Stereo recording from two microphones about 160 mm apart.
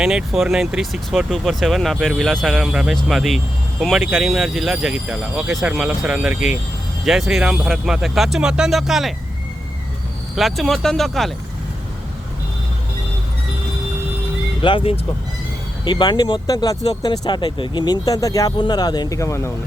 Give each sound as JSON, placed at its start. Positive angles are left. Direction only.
{"t": 0.0, "sound": "speech", "side_deg": -5}
{"t": 10.3, "sound": "speech", "side_deg": 0}
{"t": 14.6, "sound": "speech", "side_deg": 30}